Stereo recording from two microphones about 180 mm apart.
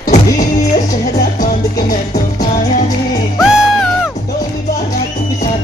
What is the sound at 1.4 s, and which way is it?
Music, 50° left (ahead or behind).